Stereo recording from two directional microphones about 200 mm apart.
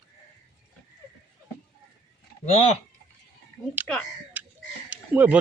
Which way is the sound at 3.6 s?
5° left (ahead or behind).